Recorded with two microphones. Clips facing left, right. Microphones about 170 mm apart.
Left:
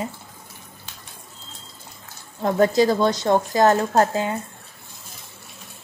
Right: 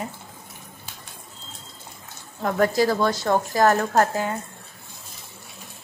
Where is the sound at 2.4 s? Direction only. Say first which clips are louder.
Left 3 dB; 20° left (ahead or behind).